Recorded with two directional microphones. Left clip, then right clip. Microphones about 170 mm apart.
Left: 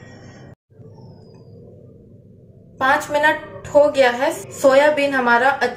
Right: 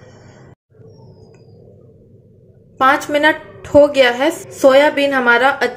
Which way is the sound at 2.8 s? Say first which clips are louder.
Right 4 dB; 45° right (ahead or behind).